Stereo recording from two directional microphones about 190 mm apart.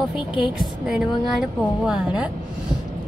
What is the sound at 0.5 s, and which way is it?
A woman's voice, centre (ahead or behind).